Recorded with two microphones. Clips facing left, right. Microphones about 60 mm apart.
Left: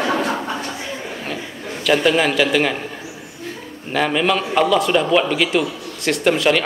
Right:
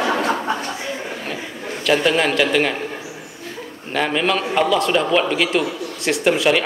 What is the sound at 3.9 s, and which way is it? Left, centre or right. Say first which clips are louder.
A man's voice: left 1 dB; centre.